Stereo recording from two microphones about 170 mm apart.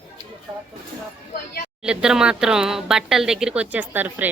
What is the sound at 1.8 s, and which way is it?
Speech, 5° right (ahead or behind).